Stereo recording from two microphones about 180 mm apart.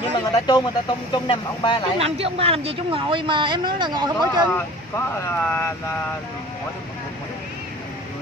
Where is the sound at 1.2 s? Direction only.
25° left (ahead or behind).